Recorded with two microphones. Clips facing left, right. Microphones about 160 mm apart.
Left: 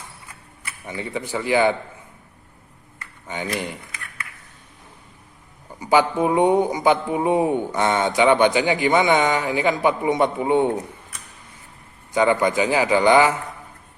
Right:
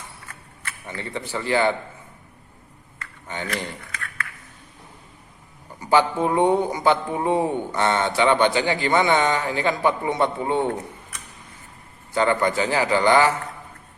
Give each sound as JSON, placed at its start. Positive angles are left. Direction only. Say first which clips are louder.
{"t": 0.3, "sound": "mechanisms", "louder": "right 1 dB", "side_deg": 15}
{"t": 3.4, "sound": "a sound", "louder": "left 3 dB", "side_deg": 15}
{"t": 5.8, "sound": "speech", "louder": "left 1 dB", "side_deg": 15}
{"t": 12.1, "sound": "speech", "louder": "left 2 dB", "side_deg": 15}